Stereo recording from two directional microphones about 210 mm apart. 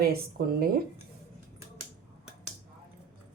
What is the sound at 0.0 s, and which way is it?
Speech, 45° right (ahead or behind).